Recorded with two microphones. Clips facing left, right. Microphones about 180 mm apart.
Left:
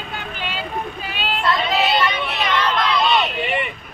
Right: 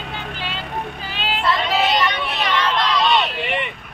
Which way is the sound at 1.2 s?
Centre (ahead or behind).